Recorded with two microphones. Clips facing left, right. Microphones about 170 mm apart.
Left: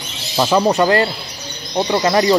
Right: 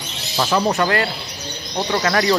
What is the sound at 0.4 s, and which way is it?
Speech, 15° left (ahead or behind).